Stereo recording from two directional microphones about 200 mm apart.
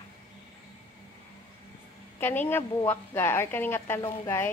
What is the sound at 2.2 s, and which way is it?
A woman's voice, 10° left (ahead or behind).